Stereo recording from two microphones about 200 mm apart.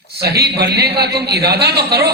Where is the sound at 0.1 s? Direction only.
50° right (ahead or behind).